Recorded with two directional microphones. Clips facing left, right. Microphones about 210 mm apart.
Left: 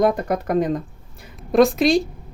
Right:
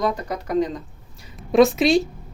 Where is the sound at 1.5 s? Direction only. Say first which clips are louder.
Even; centre (ahead or behind).